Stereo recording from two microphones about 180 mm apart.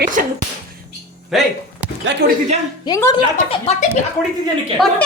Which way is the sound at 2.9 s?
20° left (ahead or behind).